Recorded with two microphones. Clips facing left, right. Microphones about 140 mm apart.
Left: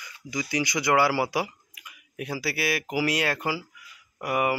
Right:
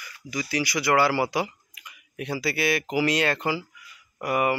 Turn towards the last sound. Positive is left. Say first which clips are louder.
# right 1 dB
turn(degrees=10)  # may be behind; listen again after turning